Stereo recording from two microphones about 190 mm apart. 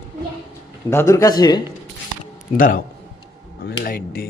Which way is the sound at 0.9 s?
15° left (ahead or behind).